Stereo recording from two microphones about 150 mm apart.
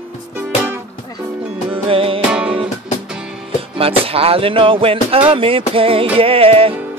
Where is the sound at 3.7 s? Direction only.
40° right (ahead or behind).